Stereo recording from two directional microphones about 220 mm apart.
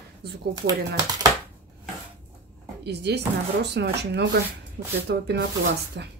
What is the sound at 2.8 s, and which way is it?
Speech, 50° right (ahead or behind).